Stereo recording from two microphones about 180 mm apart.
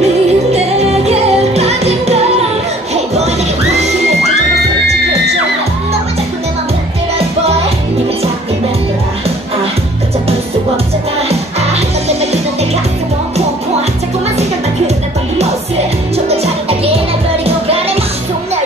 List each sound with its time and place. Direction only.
0.0 s music: 35° right (ahead or behind)
11.2 s music: 35° right (ahead or behind)
16.3 s music: 35° right (ahead or behind)